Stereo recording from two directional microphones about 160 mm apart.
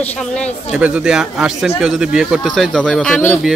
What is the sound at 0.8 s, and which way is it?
Speech, 5° right (ahead or behind).